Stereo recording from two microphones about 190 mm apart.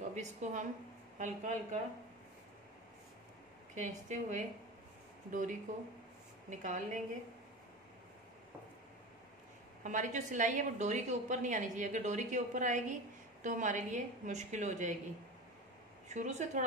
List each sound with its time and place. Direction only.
0.1 s a woman's voice: 40° right (ahead or behind)
3.7 s a woman's voice: 40° right (ahead or behind)
9.8 s a woman's voice: 40° right (ahead or behind)
16.1 s a woman's voice: 35° right (ahead or behind)